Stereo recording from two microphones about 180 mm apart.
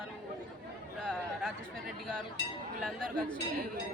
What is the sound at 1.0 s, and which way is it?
Speech, 5° left (ahead or behind).